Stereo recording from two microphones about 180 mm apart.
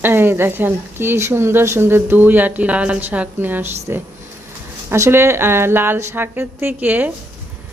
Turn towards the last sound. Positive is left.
turn(degrees=-10)  # may be behind; listen again after turning